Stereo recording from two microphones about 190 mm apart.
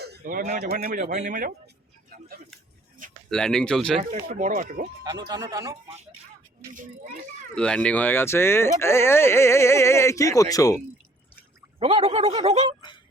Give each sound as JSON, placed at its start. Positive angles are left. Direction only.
{"t": 0.0, "sound": "speech", "side_deg": -55}
{"t": 1.0, "sound": "speech", "side_deg": -40}
{"t": 3.2, "sound": "speech", "side_deg": 5}
{"t": 4.3, "sound": "speech", "side_deg": -45}
{"t": 5.0, "sound": "speech", "side_deg": -20}
{"t": 7.5, "sound": "speech", "side_deg": 5}
{"t": 11.8, "sound": "speech", "side_deg": -30}